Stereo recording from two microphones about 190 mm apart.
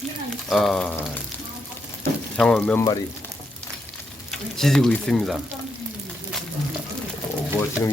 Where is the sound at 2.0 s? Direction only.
5° left (ahead or behind).